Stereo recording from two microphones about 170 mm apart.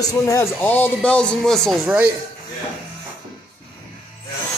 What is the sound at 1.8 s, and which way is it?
Speech, 10° right (ahead or behind).